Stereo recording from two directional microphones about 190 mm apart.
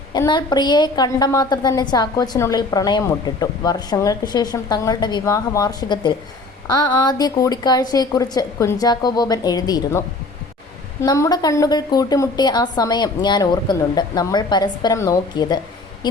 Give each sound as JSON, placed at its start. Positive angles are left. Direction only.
{"t": 0.1, "sound": "a woman's voice", "side_deg": 25}
{"t": 11.0, "sound": "a woman's voice", "side_deg": 20}